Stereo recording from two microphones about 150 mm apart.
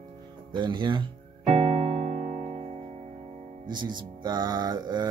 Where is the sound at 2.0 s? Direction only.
45° right (ahead or behind).